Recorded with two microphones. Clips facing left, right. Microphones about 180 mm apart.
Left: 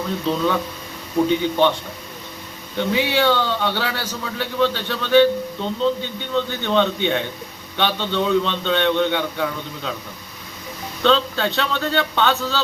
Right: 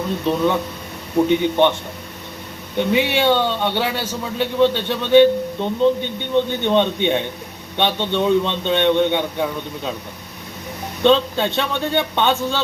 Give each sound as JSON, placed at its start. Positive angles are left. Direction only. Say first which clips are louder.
{"t": 0.3, "sound": "a man's voice", "louder": "right 2 dB", "side_deg": -20}
{"t": 2.7, "sound": "a man's voice", "louder": "right 2 dB", "side_deg": -25}
{"t": 11.0, "sound": "a man's voice", "louder": "right 3 dB", "side_deg": -20}